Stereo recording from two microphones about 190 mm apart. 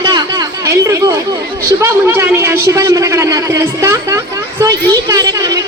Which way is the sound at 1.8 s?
15° right (ahead or behind).